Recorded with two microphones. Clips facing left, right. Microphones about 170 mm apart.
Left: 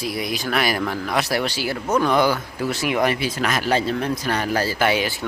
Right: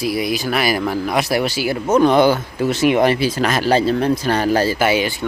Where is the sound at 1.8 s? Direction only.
25° right (ahead or behind).